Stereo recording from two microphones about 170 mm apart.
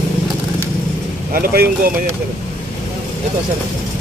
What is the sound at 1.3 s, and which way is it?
Speech, 60° right (ahead or behind).